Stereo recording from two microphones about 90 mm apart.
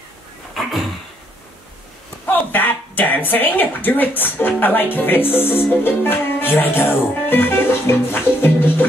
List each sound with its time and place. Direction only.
2.2 s speech: 20° left (ahead or behind)